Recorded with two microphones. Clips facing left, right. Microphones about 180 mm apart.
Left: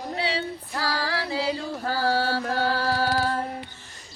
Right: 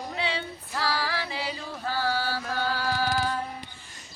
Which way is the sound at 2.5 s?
40° left (ahead or behind).